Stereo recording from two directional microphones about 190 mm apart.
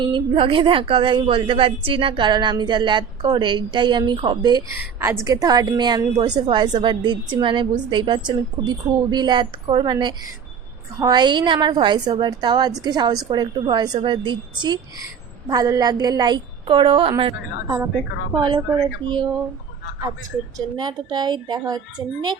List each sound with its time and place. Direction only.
0.0 s speech: 25° right (ahead or behind)
20.7 s speech: 20° right (ahead or behind)